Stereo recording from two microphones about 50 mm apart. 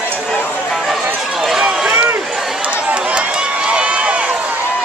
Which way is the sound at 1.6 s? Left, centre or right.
Right.